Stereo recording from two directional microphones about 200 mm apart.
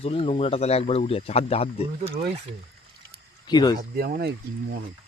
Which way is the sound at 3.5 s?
20° left (ahead or behind).